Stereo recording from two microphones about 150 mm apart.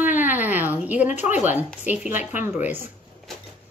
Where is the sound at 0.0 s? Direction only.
10° right (ahead or behind).